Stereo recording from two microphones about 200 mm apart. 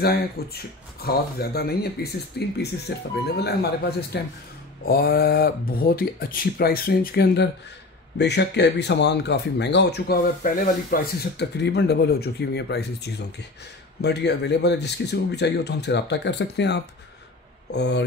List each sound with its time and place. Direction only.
0.0 s speech: 50° left (ahead or behind)
4.1 s speech: 60° left (ahead or behind)